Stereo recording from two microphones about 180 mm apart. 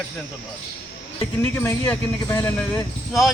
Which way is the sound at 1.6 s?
10° left (ahead or behind).